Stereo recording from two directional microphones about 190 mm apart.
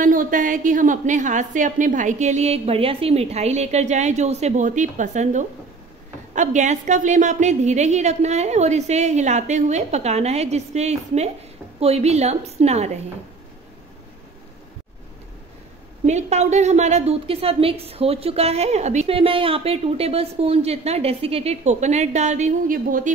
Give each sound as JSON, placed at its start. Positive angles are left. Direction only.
{"t": 0.0, "sound": "a woman's voice", "side_deg": -45}
{"t": 16.1, "sound": "a woman's voice", "side_deg": -35}